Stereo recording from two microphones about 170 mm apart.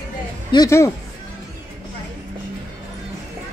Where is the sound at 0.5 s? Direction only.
20° left (ahead or behind).